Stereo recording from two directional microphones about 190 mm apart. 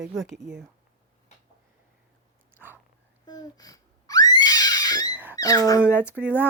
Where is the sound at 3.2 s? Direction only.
20° left (ahead or behind).